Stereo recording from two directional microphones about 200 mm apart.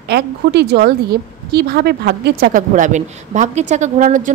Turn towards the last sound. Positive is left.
turn(degrees=-40)  # may be behind; listen again after turning